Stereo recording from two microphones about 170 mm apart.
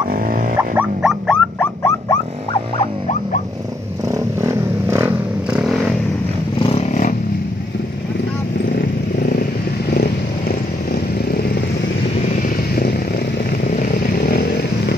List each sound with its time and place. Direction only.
0.1 s a sound: 55° right (ahead or behind)
0.6 s a sound: 10° right (ahead or behind)
1.2 s dog: 5° left (ahead or behind)
1.8 s rodents: 15° left (ahead or behind)
4.4 s vehicle: 15° right (ahead or behind)
6.6 s vehicle: 35° left (ahead or behind)
13.5 s vehicle: 60° left (ahead or behind)